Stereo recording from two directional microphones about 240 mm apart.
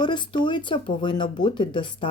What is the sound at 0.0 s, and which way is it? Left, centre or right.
A woman's voice, centre.